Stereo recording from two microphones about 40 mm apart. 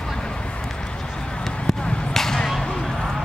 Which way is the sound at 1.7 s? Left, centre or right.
Centre.